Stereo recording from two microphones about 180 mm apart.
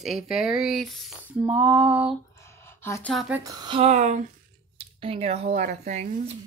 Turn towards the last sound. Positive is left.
turn(degrees=-45)  # may be behind; listen again after turning